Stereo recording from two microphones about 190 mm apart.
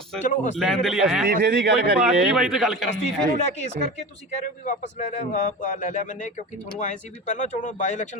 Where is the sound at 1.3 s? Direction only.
55° right (ahead or behind).